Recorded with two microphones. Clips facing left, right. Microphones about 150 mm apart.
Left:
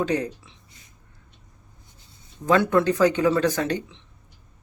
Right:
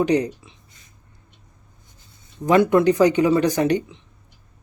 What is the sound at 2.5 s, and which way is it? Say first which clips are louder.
Speech: right 4 dB; 15° right (ahead or behind).